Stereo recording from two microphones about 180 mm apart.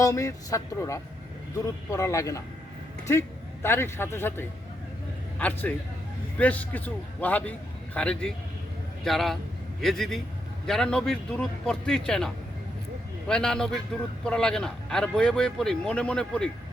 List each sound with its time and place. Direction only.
0.0 s speech: 15° left (ahead or behind)